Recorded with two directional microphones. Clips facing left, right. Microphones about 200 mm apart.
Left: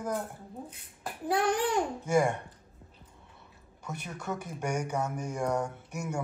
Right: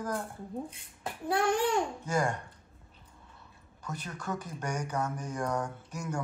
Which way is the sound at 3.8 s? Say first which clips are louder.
Left 1 dB; 10° left (ahead or behind).